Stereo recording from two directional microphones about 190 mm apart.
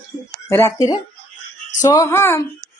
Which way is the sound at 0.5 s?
15° left (ahead or behind).